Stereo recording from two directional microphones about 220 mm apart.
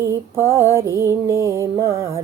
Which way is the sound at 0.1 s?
10° right (ahead or behind).